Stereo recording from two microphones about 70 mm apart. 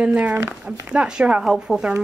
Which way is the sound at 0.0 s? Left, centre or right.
Centre.